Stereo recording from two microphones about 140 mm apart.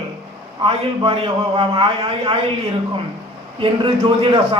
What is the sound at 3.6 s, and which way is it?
Speech, 40° right (ahead or behind).